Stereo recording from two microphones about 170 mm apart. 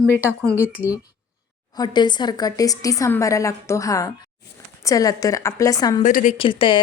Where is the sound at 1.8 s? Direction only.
25° left (ahead or behind).